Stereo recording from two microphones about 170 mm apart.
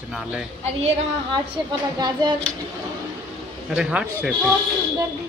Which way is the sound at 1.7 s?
25° right (ahead or behind).